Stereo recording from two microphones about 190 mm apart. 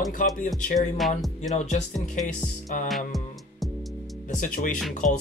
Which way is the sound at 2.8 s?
Centre (ahead or behind).